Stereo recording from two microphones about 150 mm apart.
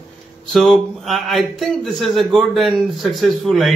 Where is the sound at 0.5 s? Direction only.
Centre (ahead or behind).